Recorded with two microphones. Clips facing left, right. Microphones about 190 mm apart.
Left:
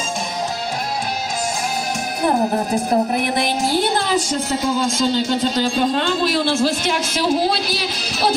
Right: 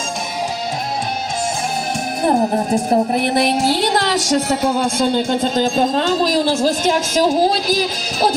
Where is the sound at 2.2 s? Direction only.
30° right (ahead or behind).